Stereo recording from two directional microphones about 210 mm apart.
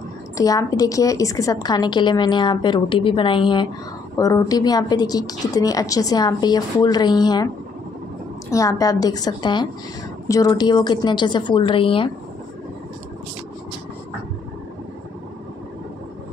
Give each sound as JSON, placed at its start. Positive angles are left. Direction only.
{"t": 0.4, "sound": "a woman's voice", "side_deg": 15}
{"t": 8.5, "sound": "a woman's voice", "side_deg": 15}